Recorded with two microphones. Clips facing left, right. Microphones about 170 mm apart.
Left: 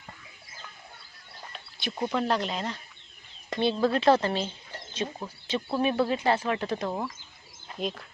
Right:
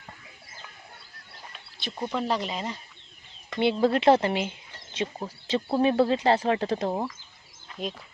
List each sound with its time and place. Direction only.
1.8 s speech: 10° left (ahead or behind)
2.1 s speech: 5° right (ahead or behind)
3.6 s speech: 25° right (ahead or behind)
4.9 s speech: 30° right (ahead or behind)